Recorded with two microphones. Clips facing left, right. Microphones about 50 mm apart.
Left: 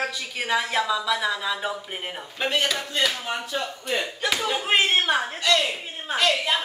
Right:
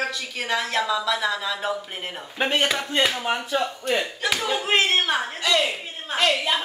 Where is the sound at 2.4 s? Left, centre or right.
Right.